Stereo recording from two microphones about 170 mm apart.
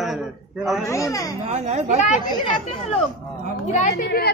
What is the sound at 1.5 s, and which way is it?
Speech, 40° right (ahead or behind).